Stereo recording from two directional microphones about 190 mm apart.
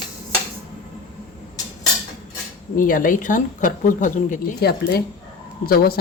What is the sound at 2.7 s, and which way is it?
Speech, 45° left (ahead or behind).